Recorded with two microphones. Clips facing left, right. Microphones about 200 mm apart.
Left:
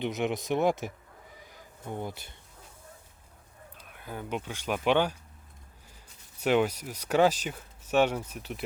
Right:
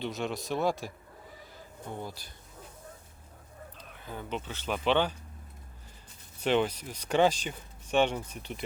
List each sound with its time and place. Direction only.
0.0 s speech: 20° left (ahead or behind)
3.8 s speech: 10° left (ahead or behind)
6.4 s speech: 10° left (ahead or behind)